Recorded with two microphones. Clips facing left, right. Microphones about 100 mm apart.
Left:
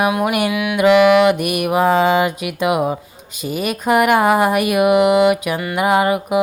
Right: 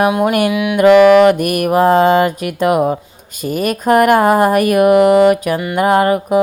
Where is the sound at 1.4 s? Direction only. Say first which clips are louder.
Right 4 dB; 45° right (ahead or behind).